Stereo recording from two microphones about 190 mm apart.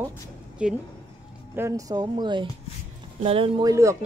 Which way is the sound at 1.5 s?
15° right (ahead or behind).